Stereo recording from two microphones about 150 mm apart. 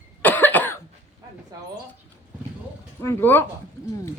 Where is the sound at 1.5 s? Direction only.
25° right (ahead or behind).